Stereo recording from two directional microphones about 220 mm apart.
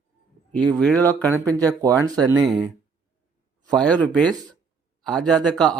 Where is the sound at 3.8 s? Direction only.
5° left (ahead or behind).